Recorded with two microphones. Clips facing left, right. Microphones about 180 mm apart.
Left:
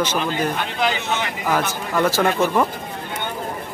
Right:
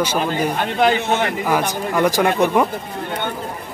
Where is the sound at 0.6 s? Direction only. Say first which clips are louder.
Right 6 dB; 50° right (ahead or behind).